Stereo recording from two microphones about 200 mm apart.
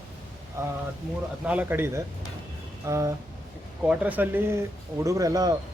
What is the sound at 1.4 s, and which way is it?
Speech, 5° right (ahead or behind).